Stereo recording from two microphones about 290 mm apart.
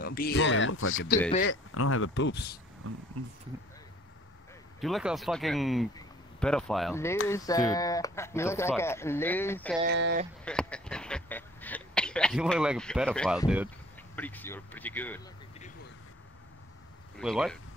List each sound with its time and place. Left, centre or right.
0.0 s speech: left
2.8 s speech: right
4.7 s speech: centre
9.8 s speech: right
10.4 s speech: centre
17.2 s speech: centre